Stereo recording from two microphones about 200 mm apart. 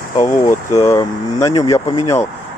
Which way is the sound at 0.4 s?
15° left (ahead or behind).